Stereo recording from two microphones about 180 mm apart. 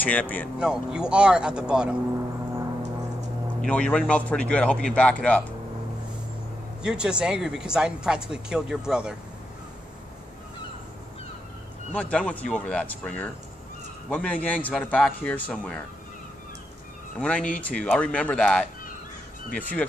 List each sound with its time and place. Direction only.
0.0 s a man's voice: 10° left (ahead or behind)
0.6 s speech: 5° right (ahead or behind)
3.6 s a man's voice: 5° left (ahead or behind)
6.8 s speech: 5° right (ahead or behind)
11.9 s a man's voice: 5° left (ahead or behind)
17.2 s a man's voice: 5° left (ahead or behind)